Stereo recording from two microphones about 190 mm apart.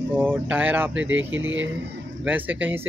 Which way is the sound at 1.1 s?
85° right.